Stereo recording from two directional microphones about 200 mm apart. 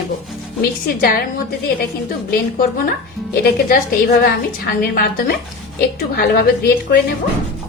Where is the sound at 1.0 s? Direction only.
45° left (ahead or behind).